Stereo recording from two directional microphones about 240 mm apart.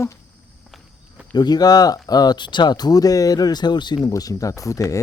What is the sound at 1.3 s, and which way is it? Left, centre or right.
Speech, centre.